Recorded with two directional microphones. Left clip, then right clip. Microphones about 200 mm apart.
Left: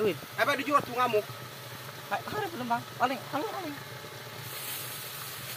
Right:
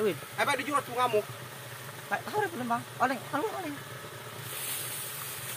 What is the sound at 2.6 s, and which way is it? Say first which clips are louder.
Speech: even; 45° right (ahead or behind).